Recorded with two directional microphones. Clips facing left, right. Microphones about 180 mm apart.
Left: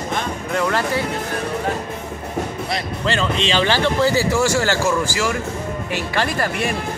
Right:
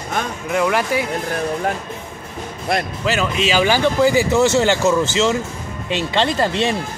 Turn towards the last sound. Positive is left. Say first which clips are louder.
# right 4 dB
turn(degrees=-25)  # may be behind; listen again after turning